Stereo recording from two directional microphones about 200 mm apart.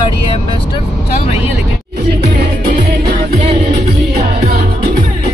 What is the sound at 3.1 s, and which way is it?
Speech, 30° right (ahead or behind).